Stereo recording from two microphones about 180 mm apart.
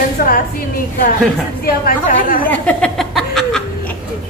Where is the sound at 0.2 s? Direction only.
50° left (ahead or behind).